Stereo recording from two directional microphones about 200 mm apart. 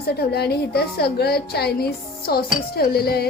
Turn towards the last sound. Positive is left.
turn(degrees=50)  # may be behind; listen again after turning